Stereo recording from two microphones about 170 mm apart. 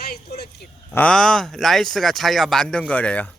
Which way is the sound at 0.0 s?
65° left (ahead or behind).